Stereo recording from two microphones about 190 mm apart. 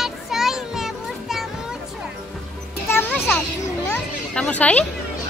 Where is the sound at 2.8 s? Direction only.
10° left (ahead or behind).